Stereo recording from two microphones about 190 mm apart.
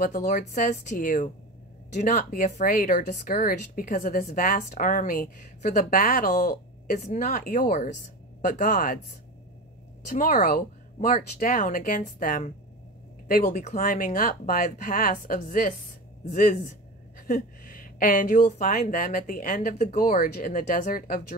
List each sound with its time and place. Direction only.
0.0 s speech: 40° left (ahead or behind)
10.0 s speech: 45° left (ahead or behind)